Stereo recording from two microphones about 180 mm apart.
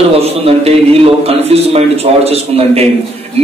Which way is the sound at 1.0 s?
35° right (ahead or behind).